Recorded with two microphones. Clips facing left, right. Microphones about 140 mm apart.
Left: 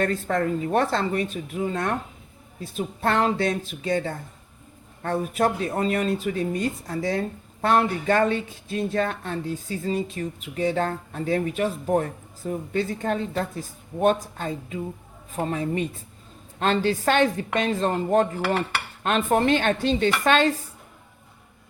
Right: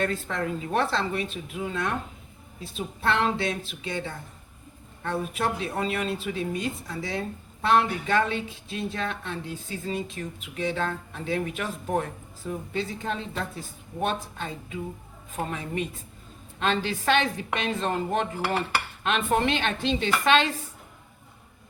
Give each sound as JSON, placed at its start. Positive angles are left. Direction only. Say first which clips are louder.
{"t": 0.0, "sound": "speech", "louder": "left 5 dB", "side_deg": 45}
{"t": 12.5, "sound": "speech", "louder": "left 5 dB", "side_deg": 50}